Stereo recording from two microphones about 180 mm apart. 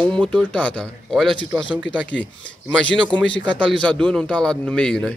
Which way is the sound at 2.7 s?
5° left (ahead or behind).